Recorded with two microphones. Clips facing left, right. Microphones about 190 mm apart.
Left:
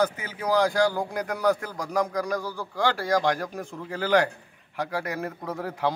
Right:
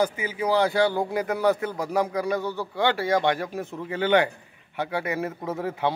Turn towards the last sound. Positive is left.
turn(degrees=0)  # may be behind; listen again after turning